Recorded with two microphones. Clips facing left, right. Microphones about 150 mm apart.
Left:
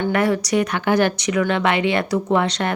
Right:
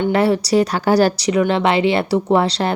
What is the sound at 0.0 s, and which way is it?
A woman's voice, 30° right (ahead or behind).